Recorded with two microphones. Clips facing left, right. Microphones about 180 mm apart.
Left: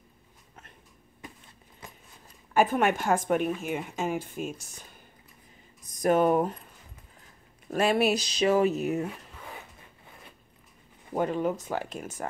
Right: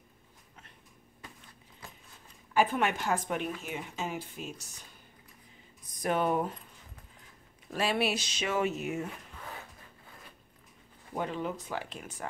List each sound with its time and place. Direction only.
2.5 s speech: 45° left (ahead or behind)
5.9 s speech: 45° left (ahead or behind)
7.7 s speech: 50° left (ahead or behind)
11.1 s speech: 45° left (ahead or behind)